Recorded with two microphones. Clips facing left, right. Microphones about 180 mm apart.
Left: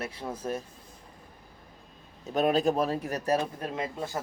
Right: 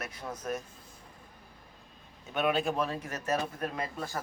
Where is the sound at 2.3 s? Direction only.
35° left (ahead or behind).